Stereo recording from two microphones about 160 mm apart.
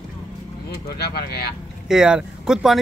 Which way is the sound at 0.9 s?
80° left.